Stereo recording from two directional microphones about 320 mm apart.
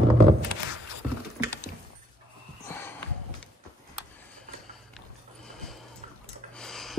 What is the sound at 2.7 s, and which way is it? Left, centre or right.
Snort, centre.